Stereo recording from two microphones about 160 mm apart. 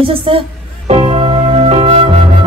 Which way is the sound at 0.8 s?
40° right (ahead or behind).